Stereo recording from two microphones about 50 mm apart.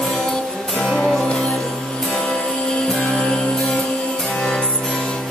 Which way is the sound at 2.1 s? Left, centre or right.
Centre.